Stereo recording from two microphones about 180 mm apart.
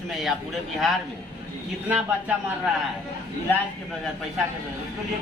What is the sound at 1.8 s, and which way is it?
Speech, 10° right (ahead or behind).